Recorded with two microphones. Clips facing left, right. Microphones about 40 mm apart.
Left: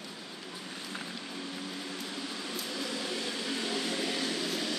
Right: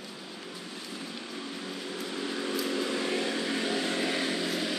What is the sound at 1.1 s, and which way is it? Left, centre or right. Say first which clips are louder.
Vehicle: right 1 dB; centre.